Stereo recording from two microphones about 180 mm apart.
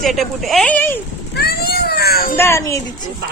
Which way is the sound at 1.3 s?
60° left (ahead or behind).